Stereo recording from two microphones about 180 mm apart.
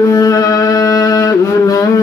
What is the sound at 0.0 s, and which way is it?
Music, 20° left (ahead or behind).